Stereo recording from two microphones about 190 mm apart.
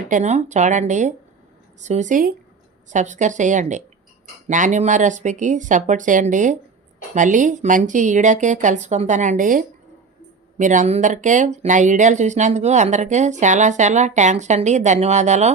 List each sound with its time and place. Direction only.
0.1 s speech: 40° right (ahead or behind)